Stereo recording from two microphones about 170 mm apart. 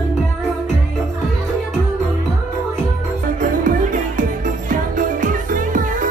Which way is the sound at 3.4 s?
50° right (ahead or behind).